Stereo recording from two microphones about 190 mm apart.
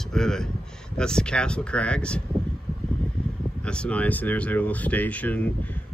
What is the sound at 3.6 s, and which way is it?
Speech, 5° left (ahead or behind).